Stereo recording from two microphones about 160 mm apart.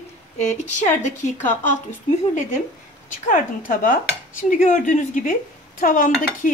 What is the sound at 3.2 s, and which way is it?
Speech, 55° left (ahead or behind).